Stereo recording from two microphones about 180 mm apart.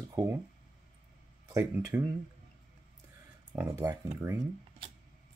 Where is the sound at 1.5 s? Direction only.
15° right (ahead or behind).